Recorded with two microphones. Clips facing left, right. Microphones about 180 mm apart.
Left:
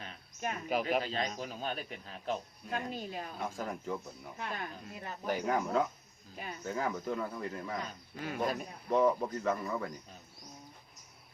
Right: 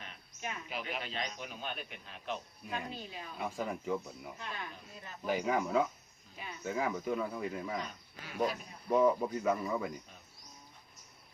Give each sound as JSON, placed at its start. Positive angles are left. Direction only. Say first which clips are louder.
{"t": 0.0, "sound": "speech", "louder": "left 5 dB", "side_deg": 40}
{"t": 3.3, "sound": "speech", "louder": "right 5 dB", "side_deg": 0}
{"t": 4.4, "sound": "speech", "louder": "left 8 dB", "side_deg": 45}
{"t": 5.2, "sound": "speech", "louder": "even", "side_deg": -5}
{"t": 8.2, "sound": "speech", "louder": "even", "side_deg": 50}
{"t": 8.9, "sound": "speech", "louder": "even", "side_deg": -10}